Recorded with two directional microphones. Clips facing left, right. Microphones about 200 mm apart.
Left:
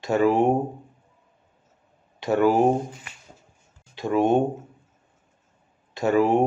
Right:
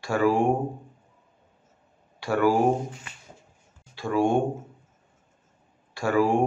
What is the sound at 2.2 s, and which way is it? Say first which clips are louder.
Speech: left 3 dB; 20° left (ahead or behind).